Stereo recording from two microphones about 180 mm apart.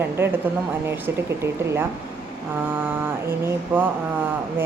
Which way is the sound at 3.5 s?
10° right (ahead or behind).